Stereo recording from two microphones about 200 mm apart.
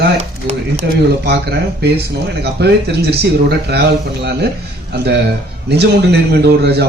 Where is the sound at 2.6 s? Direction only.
55° right (ahead or behind).